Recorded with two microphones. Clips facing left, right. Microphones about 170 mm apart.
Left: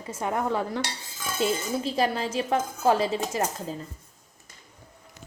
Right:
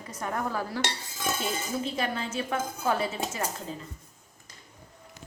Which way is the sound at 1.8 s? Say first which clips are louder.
Left 5 dB; 35° left (ahead or behind).